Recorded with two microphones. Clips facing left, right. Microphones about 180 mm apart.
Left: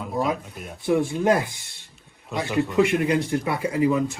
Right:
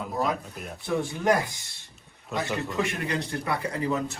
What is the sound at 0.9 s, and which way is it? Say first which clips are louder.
Speech: left 5 dB; 20° left (ahead or behind).